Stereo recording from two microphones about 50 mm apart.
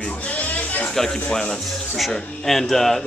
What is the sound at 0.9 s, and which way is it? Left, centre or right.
A man's voice, centre.